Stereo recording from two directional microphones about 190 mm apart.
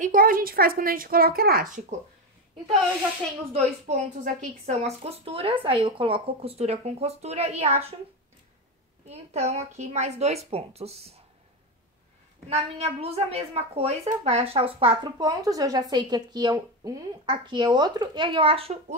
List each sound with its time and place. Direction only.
0.0 s a woman's voice: 45° right (ahead or behind)
3.5 s a woman's voice: 35° right (ahead or behind)
9.0 s a woman's voice: 35° right (ahead or behind)
12.4 s a woman's voice: 35° right (ahead or behind)